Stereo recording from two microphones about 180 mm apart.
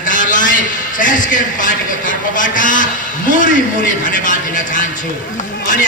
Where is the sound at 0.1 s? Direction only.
45° left (ahead or behind).